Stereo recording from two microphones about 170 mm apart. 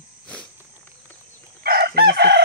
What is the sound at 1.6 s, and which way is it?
Chicken, 65° right (ahead or behind).